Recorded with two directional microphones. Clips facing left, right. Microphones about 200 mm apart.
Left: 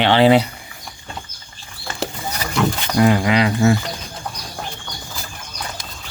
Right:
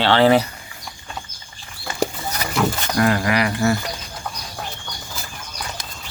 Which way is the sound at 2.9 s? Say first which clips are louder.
Left 4 dB; 20° left (ahead or behind).